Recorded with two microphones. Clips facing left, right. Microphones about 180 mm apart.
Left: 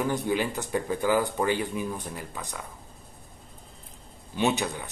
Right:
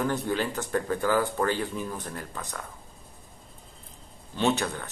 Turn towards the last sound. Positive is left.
turn(degrees=15)  # may be behind; listen again after turning